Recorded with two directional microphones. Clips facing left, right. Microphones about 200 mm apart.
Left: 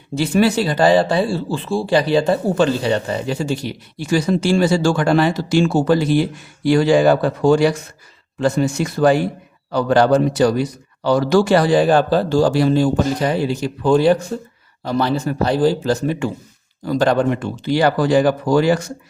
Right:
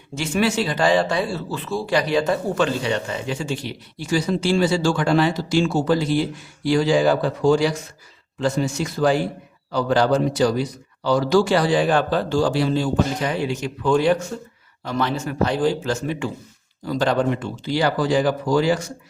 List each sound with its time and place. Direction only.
0.1 s speech: 35° left (ahead or behind)
4.0 s a man's voice: 55° left (ahead or behind)